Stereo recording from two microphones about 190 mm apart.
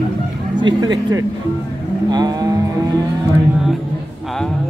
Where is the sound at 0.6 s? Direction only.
25° right (ahead or behind).